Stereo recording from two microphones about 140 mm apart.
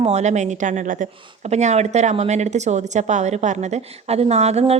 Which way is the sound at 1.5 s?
55° right (ahead or behind).